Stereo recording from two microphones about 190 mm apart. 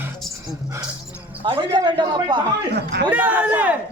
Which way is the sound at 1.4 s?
25° right (ahead or behind).